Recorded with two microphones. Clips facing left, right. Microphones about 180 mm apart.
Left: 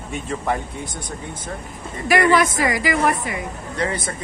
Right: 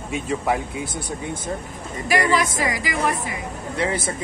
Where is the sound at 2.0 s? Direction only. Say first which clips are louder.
Left 4 dB; 60° left (ahead or behind).